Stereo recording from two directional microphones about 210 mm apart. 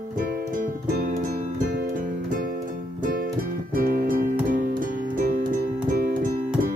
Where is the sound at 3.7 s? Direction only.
45° right (ahead or behind).